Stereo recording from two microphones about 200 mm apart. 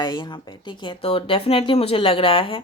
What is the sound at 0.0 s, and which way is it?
A woman's voice, 20° left (ahead or behind).